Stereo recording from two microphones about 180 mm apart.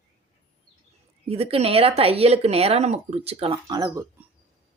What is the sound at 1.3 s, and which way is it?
Speech, 35° right (ahead or behind).